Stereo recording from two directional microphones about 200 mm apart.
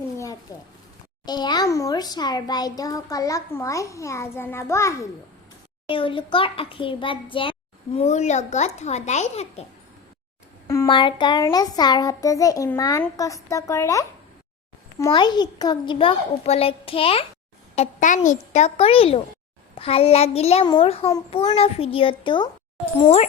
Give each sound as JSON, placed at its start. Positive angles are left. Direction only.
{"t": 0.5, "sound": "a child's voice", "side_deg": 20}
{"t": 5.9, "sound": "a child's voice", "side_deg": 25}
{"t": 10.8, "sound": "a child's voice", "side_deg": 25}
{"t": 17.7, "sound": "a child's voice", "side_deg": 40}